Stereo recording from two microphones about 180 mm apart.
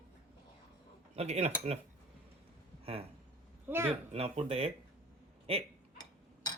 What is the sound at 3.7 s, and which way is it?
Speech, 15° right (ahead or behind).